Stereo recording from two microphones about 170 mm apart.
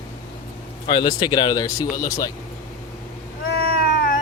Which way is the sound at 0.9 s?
25° left (ahead or behind).